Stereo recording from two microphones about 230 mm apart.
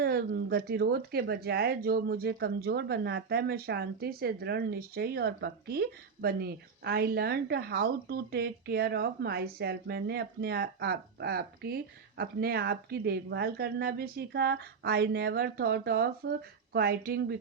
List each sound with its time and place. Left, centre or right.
0.0 s speech: right